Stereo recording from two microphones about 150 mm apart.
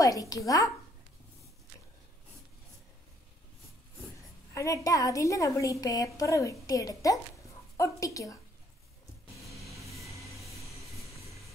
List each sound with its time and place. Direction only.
0.0 s a woman's voice: 20° left (ahead or behind)
4.6 s a woman's voice: 20° left (ahead or behind)
10.0 s vehicle: 20° left (ahead or behind)
10.3 s vehicle: centre (ahead or behind)